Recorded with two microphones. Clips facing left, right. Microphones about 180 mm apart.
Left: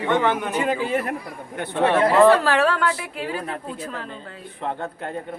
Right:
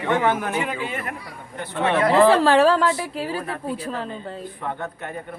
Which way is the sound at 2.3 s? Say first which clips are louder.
Right 3 dB; 30° right (ahead or behind).